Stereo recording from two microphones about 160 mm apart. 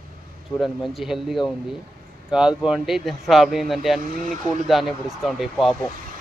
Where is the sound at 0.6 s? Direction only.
Centre (ahead or behind).